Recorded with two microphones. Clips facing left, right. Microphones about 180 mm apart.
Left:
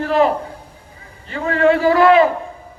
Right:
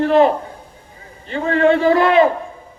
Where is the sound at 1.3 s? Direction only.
30° right (ahead or behind).